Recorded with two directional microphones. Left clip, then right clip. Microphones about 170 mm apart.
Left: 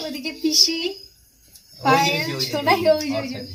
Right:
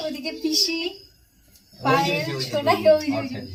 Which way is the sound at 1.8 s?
30° left (ahead or behind).